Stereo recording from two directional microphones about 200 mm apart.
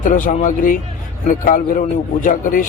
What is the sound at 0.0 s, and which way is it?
Speech, 40° left (ahead or behind).